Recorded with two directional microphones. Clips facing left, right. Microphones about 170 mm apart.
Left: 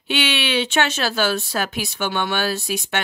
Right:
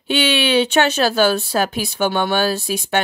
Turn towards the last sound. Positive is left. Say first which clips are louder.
# right 4 dB
turn(degrees=-30)  # may be behind; listen again after turning